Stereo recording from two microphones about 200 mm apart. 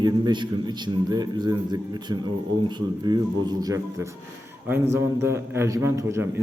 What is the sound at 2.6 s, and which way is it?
Speech, 20° right (ahead or behind).